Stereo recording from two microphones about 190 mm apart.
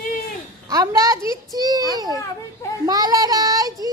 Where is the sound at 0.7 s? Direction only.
20° right (ahead or behind).